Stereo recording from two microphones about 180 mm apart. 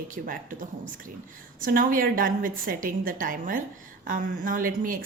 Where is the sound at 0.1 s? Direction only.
50° right (ahead or behind).